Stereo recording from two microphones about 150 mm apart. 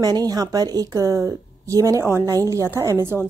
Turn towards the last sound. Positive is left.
turn(degrees=-15)  # may be behind; listen again after turning